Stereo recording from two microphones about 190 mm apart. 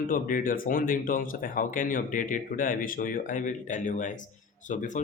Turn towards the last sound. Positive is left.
turn(degrees=40)  # may be behind; listen again after turning